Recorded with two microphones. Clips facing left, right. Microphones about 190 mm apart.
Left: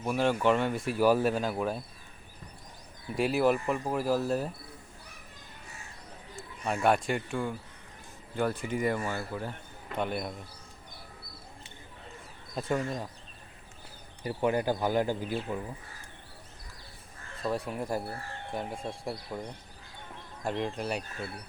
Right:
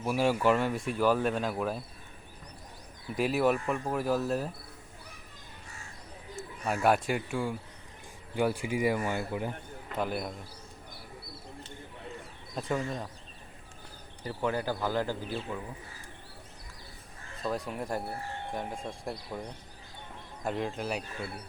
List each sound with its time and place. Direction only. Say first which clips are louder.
0.0 s speech: even; 5° right (ahead or behind)
3.2 s speech: left 1 dB; centre (ahead or behind)
6.3 s a man's voice: even; 5° right (ahead or behind)
9.9 s speech: even; 5° right (ahead or behind)
12.5 s speech: left 1 dB; centre (ahead or behind)
14.3 s speech: left 3 dB; 15° left (ahead or behind)
17.4 s speech: left 1 dB; centre (ahead or behind)
20.4 s speech: left 1 dB; centre (ahead or behind)